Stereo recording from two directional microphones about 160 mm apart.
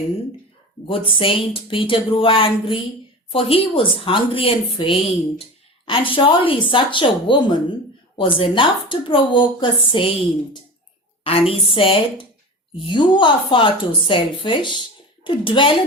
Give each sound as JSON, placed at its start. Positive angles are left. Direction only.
{"t": 0.9, "sound": "a woman's voice", "side_deg": 35}